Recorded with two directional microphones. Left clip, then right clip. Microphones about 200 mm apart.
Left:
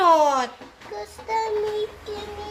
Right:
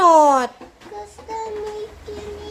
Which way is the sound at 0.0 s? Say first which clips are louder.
Right 5 dB; 40° right (ahead or behind).